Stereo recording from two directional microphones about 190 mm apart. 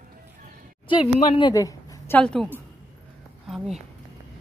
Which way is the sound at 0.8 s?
25° left (ahead or behind).